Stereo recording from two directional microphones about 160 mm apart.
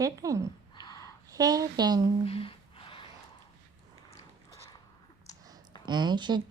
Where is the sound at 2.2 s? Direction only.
35° left (ahead or behind).